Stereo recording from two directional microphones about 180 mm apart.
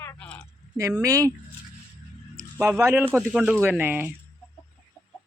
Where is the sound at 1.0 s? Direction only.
20° right (ahead or behind).